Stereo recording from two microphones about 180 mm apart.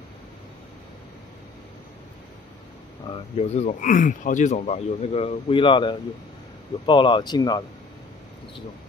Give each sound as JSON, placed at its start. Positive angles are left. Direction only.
{"t": 3.1, "sound": "speech", "side_deg": 35}